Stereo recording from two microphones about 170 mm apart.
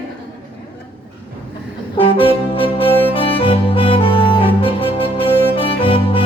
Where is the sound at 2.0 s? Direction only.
30° left (ahead or behind).